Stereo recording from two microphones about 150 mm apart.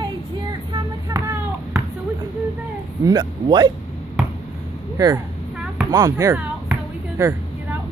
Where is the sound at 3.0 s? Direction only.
25° right (ahead or behind).